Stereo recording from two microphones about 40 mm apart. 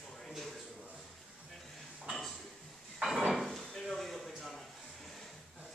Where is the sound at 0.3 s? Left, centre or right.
Centre.